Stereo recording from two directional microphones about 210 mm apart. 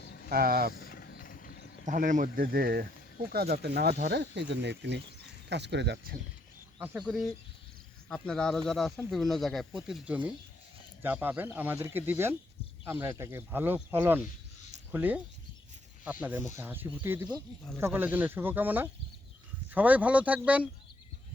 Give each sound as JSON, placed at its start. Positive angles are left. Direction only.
{"t": 0.0, "sound": "vehicle", "side_deg": 50}
{"t": 0.3, "sound": "speech", "side_deg": -45}
{"t": 0.7, "sound": "a sound", "side_deg": 45}
{"t": 1.8, "sound": "speech", "side_deg": -35}
{"t": 6.7, "sound": "speech", "side_deg": -10}
{"t": 16.2, "sound": "speech", "side_deg": -10}